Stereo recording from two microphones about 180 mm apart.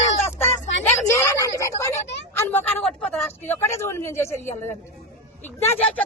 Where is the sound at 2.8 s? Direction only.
5° left (ahead or behind).